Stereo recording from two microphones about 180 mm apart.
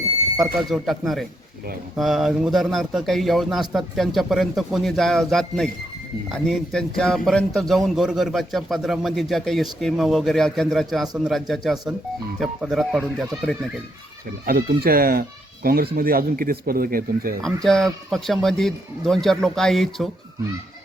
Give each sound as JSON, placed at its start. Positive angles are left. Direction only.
{"t": 0.3, "sound": "a man's voice", "side_deg": 0}
{"t": 14.4, "sound": "speech", "side_deg": -55}
{"t": 17.4, "sound": "a man's voice", "side_deg": 0}